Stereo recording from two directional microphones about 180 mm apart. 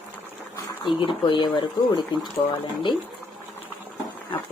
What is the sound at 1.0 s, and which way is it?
Speech, 30° left (ahead or behind).